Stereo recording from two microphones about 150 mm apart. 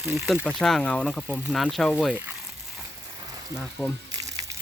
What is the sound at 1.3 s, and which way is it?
Speech, 5° right (ahead or behind).